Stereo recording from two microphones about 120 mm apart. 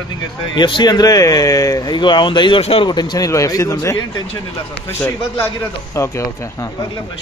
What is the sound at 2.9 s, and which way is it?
Speech, 35° left (ahead or behind).